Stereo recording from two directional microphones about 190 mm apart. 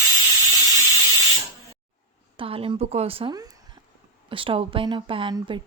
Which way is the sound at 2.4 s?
30° right (ahead or behind).